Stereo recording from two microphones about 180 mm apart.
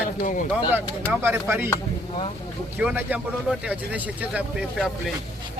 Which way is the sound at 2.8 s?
10° right (ahead or behind).